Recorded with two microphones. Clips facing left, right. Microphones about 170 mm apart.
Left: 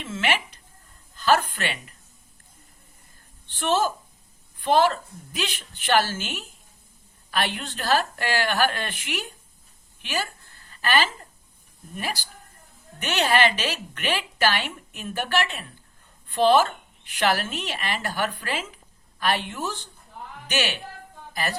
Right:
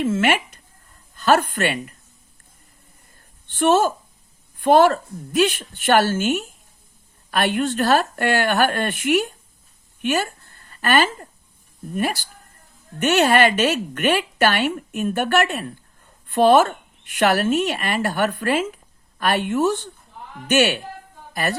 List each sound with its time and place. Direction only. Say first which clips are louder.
0.0 s a woman's voice: right 8 dB; 50° right (ahead or behind)
3.5 s a woman's voice: right 6 dB; 55° right (ahead or behind)
10.7 s a sound: right 5 dB; 50° right (ahead or behind)
11.9 s a woman's voice: right 8 dB; 50° right (ahead or behind)